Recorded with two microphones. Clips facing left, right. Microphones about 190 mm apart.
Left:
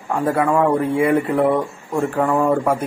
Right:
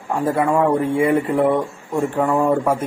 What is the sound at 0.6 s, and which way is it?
Speech, centre (ahead or behind).